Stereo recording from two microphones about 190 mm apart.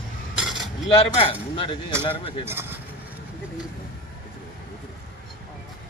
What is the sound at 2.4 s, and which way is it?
Speech, 10° right (ahead or behind).